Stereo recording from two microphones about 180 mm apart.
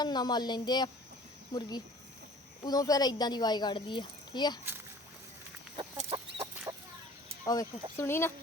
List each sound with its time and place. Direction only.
0.0 s speech: 25° left (ahead or behind)
5.7 s chicken: 25° right (ahead or behind)
7.4 s speech: 20° left (ahead or behind)